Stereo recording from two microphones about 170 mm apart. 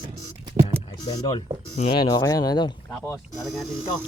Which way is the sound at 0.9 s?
25° left (ahead or behind).